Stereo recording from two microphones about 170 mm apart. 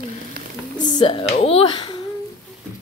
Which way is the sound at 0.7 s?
25° left (ahead or behind).